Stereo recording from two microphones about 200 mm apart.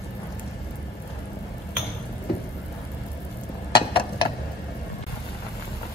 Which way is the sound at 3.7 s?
25° left (ahead or behind).